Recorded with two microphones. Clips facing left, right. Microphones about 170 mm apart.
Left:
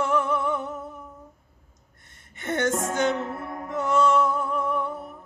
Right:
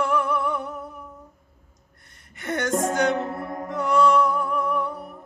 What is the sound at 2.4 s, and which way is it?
Music, 25° left (ahead or behind).